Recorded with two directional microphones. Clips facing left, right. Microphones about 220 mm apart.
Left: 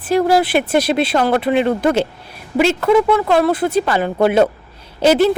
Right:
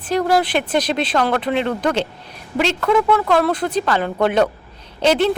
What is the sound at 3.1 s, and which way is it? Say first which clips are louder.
Speech: left 2 dB; 20° left (ahead or behind).